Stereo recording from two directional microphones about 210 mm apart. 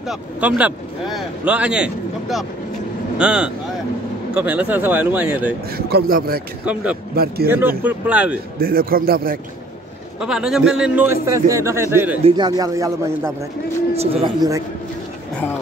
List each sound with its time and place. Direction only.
0.1 s a man's voice: 5° right (ahead or behind)
5.8 s a man's voice: 50° right (ahead or behind)
6.6 s a man's voice: 5° right (ahead or behind)
8.5 s a man's voice: 45° right (ahead or behind)
10.2 s a man's voice: centre (ahead or behind)
12.2 s a man's voice: 25° right (ahead or behind)